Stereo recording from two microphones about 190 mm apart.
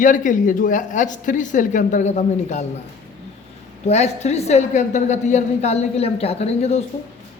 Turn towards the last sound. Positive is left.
turn(degrees=35)  # may be behind; listen again after turning